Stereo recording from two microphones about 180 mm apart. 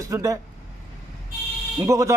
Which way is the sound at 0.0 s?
20° right (ahead or behind).